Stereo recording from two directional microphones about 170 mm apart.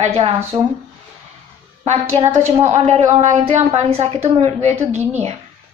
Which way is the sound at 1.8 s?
40° right (ahead or behind).